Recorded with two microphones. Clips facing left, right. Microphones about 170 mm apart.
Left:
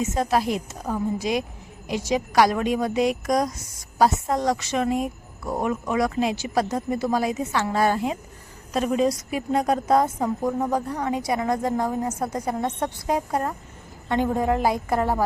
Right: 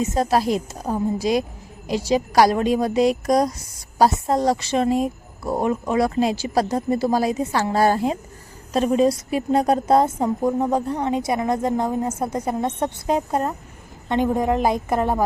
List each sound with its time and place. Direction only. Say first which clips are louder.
0.0 s a woman's voice: right 3 dB; 35° right (ahead or behind); by 15.2 s 20° right (ahead or behind)